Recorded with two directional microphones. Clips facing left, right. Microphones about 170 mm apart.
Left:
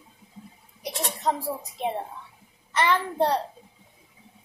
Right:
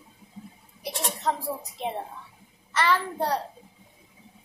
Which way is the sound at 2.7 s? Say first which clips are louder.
Left 2 dB; 20° left (ahead or behind).